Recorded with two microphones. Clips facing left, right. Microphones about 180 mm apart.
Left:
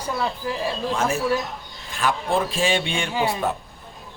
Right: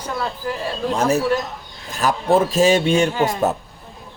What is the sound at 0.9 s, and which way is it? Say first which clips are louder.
Speech: right 6 dB; 40° right (ahead or behind).